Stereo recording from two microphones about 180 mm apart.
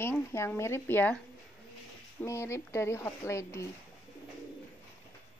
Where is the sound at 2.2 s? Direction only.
15° left (ahead or behind).